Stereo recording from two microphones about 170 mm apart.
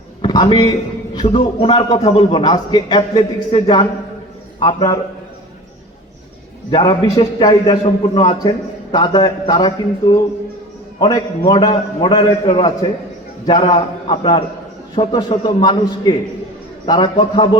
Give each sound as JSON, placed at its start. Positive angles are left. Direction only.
{"t": 0.2, "sound": "a sound", "side_deg": 25}
{"t": 1.1, "sound": "a man's voice", "side_deg": 30}
{"t": 6.7, "sound": "a man's voice", "side_deg": 25}
{"t": 16.8, "sound": "a man's voice", "side_deg": 25}